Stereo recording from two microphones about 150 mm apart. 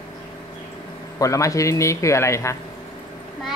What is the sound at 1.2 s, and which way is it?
A man's voice, 20° left (ahead or behind).